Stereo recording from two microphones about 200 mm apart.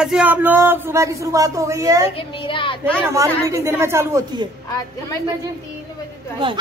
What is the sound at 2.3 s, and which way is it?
Speech, 25° left (ahead or behind).